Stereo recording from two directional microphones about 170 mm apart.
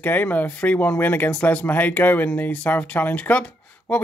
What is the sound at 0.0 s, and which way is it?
Speech, 10° left (ahead or behind).